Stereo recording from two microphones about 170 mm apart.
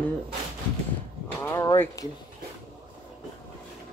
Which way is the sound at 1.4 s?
20° left (ahead or behind).